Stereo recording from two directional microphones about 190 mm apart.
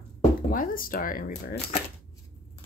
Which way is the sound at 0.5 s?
45° left (ahead or behind).